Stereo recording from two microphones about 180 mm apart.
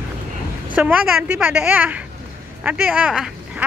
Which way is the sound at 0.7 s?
10° right (ahead or behind).